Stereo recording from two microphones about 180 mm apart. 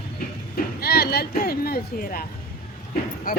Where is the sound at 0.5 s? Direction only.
60° left (ahead or behind).